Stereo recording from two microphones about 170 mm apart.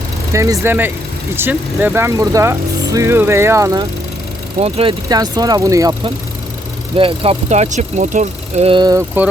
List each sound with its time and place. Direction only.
0.3 s speech: 20° right (ahead or behind)
4.6 s speech: 35° right (ahead or behind)
5.0 s speech: 20° right (ahead or behind)
6.9 s speech: 35° right (ahead or behind)
8.7 s speech: 20° right (ahead or behind)